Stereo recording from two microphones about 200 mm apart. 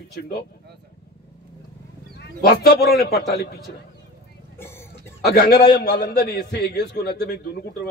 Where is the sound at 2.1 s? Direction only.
55° left (ahead or behind).